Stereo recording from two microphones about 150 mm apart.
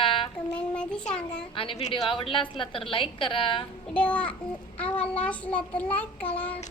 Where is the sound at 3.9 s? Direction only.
10° left (ahead or behind).